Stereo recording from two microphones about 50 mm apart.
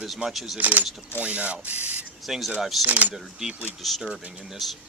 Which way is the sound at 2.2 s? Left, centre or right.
Centre.